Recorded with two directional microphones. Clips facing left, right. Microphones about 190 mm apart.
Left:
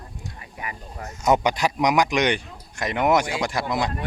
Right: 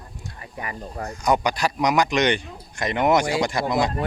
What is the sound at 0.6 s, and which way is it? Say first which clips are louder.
Speech: right 5 dB; 40° right (ahead or behind).